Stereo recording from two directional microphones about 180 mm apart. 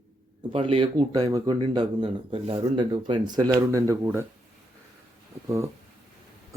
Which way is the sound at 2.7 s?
25° right (ahead or behind).